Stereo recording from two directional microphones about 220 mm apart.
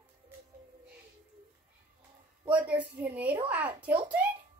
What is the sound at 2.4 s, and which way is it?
A woman's voice, 5° right (ahead or behind).